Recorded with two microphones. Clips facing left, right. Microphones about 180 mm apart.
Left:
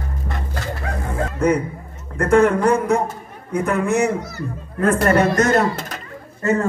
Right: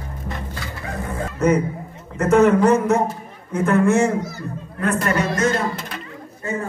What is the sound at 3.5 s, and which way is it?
Speech, 15° left (ahead or behind).